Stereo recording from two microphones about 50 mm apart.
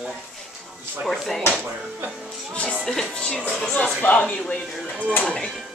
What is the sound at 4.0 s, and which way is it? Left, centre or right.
Speech, left.